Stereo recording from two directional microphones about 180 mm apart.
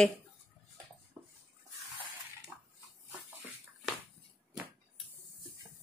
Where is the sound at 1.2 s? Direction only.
10° right (ahead or behind).